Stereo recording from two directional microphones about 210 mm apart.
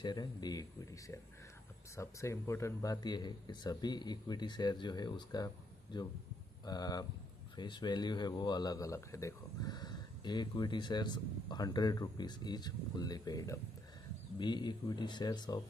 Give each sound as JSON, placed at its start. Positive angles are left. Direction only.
{"t": 0.0, "sound": "speech", "side_deg": 20}